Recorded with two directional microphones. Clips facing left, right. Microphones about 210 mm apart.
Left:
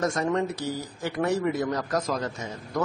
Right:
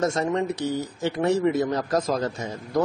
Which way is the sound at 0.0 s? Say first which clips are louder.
Right 2 dB; 25° right (ahead or behind).